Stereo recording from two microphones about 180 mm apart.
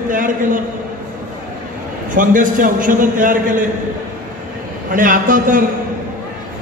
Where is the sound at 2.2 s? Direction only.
45° right (ahead or behind).